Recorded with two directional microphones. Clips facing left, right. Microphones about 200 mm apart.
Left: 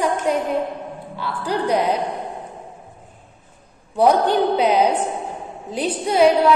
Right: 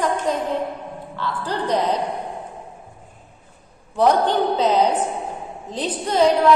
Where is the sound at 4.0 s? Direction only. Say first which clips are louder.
Left 1 dB; 10° left (ahead or behind).